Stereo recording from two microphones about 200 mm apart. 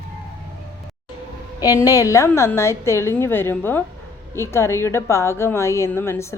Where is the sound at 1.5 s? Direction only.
15° left (ahead or behind).